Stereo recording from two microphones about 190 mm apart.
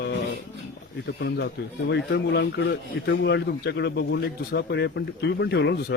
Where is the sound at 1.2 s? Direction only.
65° left (ahead or behind).